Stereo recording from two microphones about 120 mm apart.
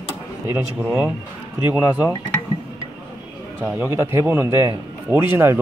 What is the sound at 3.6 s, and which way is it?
A man's voice, 20° right (ahead or behind).